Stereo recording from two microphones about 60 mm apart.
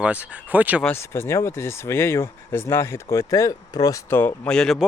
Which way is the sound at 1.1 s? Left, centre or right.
Left.